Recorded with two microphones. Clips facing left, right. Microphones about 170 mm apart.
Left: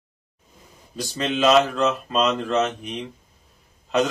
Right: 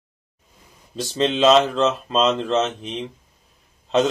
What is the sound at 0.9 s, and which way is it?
Speech, 25° right (ahead or behind).